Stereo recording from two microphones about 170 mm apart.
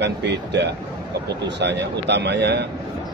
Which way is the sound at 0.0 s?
90° right.